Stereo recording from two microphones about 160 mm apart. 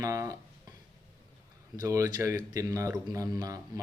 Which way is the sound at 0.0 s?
20° right (ahead or behind).